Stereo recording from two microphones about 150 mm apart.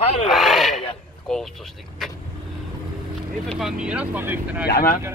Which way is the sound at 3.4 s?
Centre (ahead or behind).